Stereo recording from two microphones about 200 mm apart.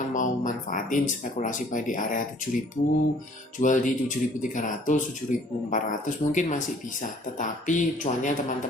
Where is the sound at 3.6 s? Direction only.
40° left (ahead or behind).